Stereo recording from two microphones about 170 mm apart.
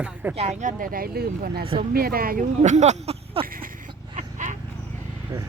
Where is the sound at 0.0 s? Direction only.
10° right (ahead or behind).